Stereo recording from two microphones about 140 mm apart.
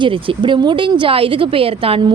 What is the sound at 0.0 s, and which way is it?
A woman's voice, 35° right (ahead or behind).